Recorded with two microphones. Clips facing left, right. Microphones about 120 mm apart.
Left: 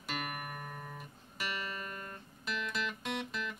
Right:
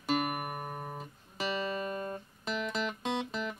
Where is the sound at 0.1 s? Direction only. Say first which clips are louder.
Right 9 dB; 35° right (ahead or behind).